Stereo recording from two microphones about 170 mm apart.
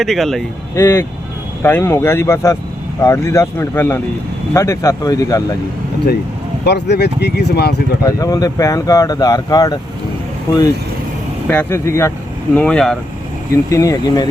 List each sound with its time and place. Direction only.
0.0 s speech: centre (ahead or behind)
0.8 s speech: 15° left (ahead or behind)
6.7 s speech: 75° left (ahead or behind)
8.0 s speech: 20° left (ahead or behind)
11.4 s speech: 10° left (ahead or behind)
12.5 s speech: 5° left (ahead or behind)
13.7 s speech: 20° left (ahead or behind)